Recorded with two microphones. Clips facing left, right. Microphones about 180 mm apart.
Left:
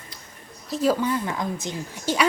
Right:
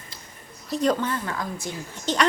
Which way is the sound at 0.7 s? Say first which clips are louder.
Left 1 dB; 5° left (ahead or behind).